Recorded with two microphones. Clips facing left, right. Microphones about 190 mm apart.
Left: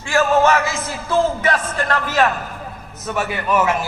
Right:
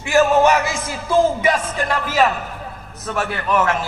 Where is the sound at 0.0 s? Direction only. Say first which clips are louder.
Right 2 dB; 15° right (ahead or behind).